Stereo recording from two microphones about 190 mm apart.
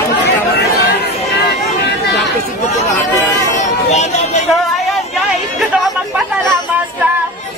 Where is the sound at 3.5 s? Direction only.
40° left (ahead or behind).